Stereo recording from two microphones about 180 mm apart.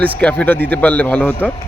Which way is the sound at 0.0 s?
5° left (ahead or behind).